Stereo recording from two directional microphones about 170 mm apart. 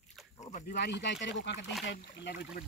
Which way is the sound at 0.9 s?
90° left.